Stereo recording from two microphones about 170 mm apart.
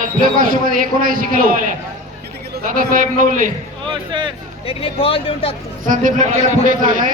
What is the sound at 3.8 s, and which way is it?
Music, 30° right (ahead or behind).